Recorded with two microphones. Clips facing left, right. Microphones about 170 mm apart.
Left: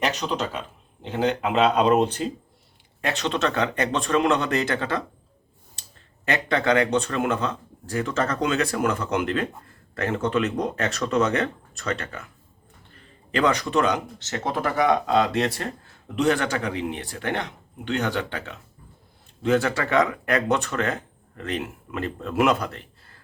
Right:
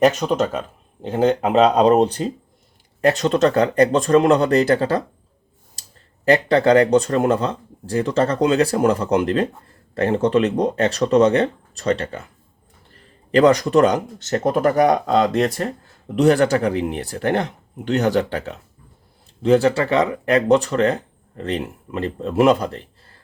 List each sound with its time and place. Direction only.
0.0 s speech: 45° right (ahead or behind)
6.2 s speech: 35° right (ahead or behind)
13.3 s speech: 40° right (ahead or behind)